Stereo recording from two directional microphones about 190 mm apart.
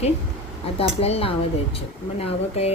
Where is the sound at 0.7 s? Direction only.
30° left (ahead or behind).